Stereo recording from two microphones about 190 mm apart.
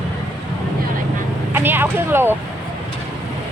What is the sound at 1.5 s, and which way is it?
Speech, 10° right (ahead or behind).